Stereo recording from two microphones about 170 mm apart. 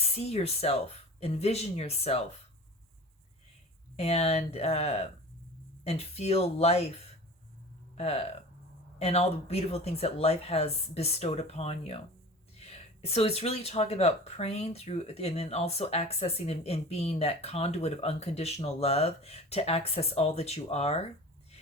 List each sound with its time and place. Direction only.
0.0 s speech: 40° left (ahead or behind)
3.9 s speech: 35° left (ahead or behind)